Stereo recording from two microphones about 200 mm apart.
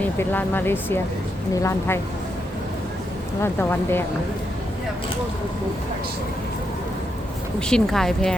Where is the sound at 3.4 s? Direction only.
10° left (ahead or behind).